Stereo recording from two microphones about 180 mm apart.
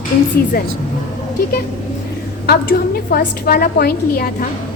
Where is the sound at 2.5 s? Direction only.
55° left (ahead or behind).